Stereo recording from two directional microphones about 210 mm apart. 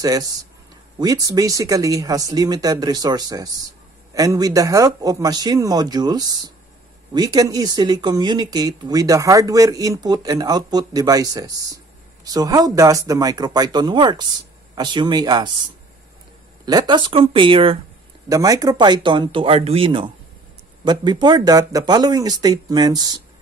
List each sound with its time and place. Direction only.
0.0 s speech: 15° right (ahead or behind)
16.6 s speech: 20° right (ahead or behind)